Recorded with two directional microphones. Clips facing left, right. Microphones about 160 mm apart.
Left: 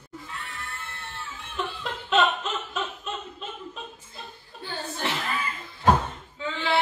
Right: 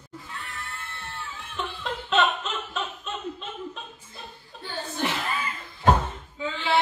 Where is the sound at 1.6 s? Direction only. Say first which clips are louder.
Even; centre (ahead or behind).